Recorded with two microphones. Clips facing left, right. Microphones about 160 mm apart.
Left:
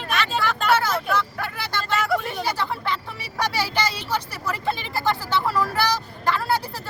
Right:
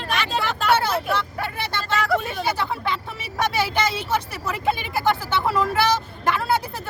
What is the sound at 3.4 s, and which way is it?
Speech, 25° right (ahead or behind).